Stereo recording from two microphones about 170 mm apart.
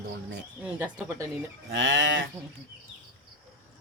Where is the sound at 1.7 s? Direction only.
90° right.